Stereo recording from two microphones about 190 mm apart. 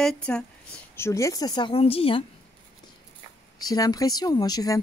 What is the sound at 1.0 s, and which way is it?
A woman's voice, 15° left (ahead or behind).